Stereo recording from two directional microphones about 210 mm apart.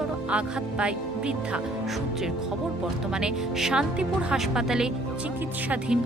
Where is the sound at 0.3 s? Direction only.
5° right (ahead or behind).